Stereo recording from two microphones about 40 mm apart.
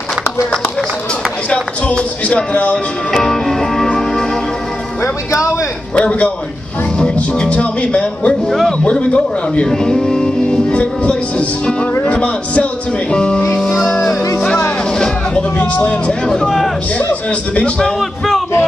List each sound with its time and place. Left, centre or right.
1.5 s speech: left
3.1 s music: centre
5.9 s speech: left
8.5 s speech: centre
8.9 s a man's voice: left
9.7 s speech: centre
10.7 s a man's voice: left
15.6 s a man's voice: left
16.4 s speech: centre
17.1 s speech: left